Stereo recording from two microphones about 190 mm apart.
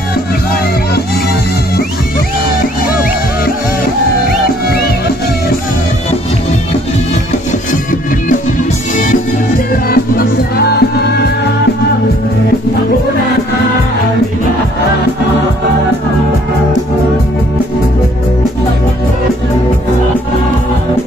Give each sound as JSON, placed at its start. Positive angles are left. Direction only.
{"t": 9.7, "sound": "music", "side_deg": 50}